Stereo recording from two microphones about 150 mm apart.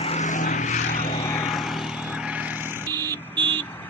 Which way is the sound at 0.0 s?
50° left (ahead or behind).